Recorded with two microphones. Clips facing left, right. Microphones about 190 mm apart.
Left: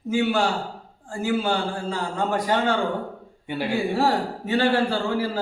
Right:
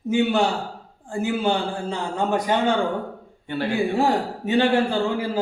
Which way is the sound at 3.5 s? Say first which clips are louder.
Right 1 dB; 10° left (ahead or behind).